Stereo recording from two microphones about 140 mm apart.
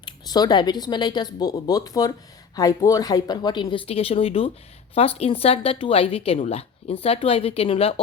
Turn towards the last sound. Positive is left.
turn(degrees=45)  # may be behind; listen again after turning